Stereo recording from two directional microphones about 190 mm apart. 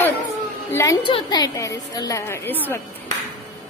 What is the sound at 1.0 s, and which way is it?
A woman's voice, 25° left (ahead or behind).